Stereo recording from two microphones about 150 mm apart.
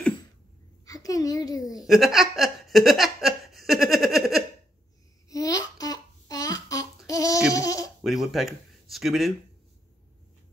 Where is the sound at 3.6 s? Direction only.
Centre (ahead or behind).